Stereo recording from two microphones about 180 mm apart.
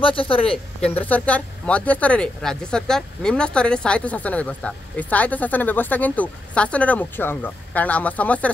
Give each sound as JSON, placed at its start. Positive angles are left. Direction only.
{"t": 0.0, "sound": "speech", "side_deg": 30}
{"t": 1.0, "sound": "speech", "side_deg": 10}